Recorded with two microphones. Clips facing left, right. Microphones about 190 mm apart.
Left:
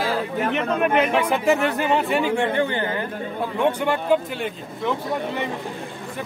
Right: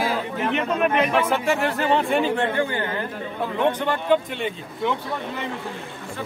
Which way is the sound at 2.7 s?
25° left (ahead or behind).